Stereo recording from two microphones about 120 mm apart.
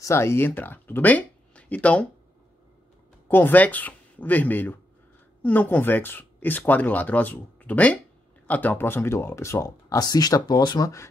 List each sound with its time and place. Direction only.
0.0 s speech: 20° left (ahead or behind)
3.3 s speech: 15° left (ahead or behind); by 10.9 s 35° left (ahead or behind)